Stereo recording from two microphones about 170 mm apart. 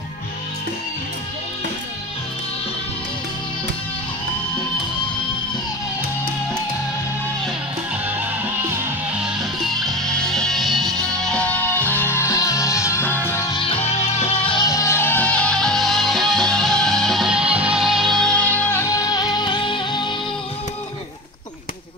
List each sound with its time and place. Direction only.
7.4 s music: 10° right (ahead or behind); by 13.6 s 15° left (ahead or behind)
13.6 s music: 35° left (ahead or behind)